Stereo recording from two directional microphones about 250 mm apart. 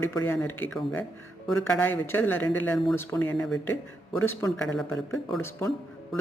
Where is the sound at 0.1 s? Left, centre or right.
Centre.